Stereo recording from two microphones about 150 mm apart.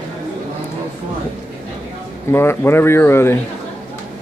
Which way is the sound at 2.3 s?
15° left (ahead or behind).